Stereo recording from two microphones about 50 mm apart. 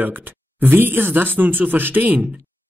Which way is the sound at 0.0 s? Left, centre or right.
Right.